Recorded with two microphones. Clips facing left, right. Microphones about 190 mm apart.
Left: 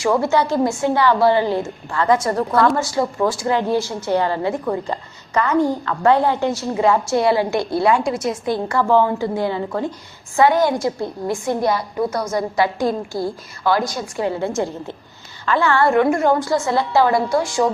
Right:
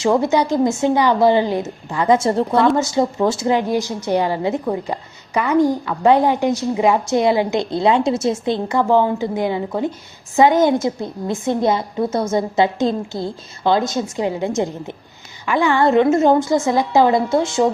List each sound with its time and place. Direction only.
0.0 s a woman's voice: 20° right (ahead or behind)